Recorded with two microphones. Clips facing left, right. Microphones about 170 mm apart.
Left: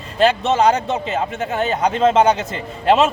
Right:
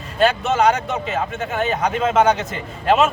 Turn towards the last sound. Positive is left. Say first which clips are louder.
# left 2 dB
turn(degrees=30)  # may be behind; listen again after turning